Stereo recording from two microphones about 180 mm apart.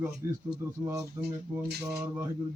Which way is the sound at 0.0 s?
10° right (ahead or behind).